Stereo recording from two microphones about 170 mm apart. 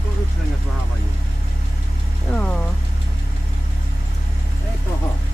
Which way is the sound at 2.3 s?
5° left (ahead or behind).